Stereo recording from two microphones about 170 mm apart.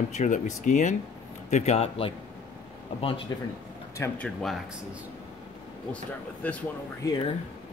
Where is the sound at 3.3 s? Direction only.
20° left (ahead or behind).